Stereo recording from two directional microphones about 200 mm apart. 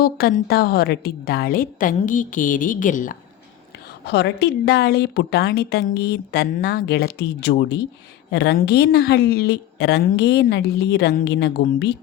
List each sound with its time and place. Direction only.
0.0 s a woman's voice: 50° left (ahead or behind)
4.0 s a woman's voice: 55° left (ahead or behind)